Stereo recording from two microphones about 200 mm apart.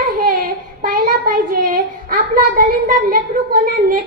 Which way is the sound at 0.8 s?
45° right (ahead or behind).